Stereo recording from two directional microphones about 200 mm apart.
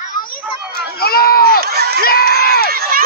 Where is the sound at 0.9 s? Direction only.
50° left (ahead or behind).